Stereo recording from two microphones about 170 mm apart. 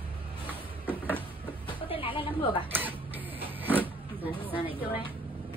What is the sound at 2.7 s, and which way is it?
Printer, 10° right (ahead or behind).